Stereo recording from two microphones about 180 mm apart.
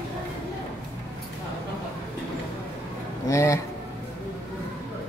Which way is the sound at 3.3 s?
15° left (ahead or behind).